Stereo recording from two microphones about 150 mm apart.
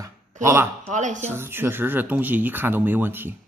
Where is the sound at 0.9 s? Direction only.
55° right (ahead or behind).